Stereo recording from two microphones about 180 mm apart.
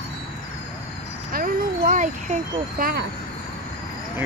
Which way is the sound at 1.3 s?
55° right (ahead or behind).